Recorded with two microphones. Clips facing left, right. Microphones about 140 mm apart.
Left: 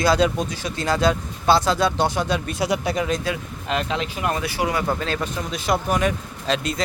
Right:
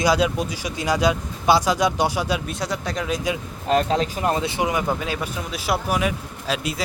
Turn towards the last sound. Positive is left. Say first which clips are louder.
# left 2 dB
turn(degrees=-5)  # may be behind; listen again after turning